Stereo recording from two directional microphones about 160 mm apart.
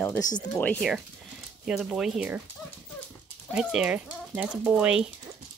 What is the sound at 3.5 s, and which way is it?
Speech, 5° right (ahead or behind).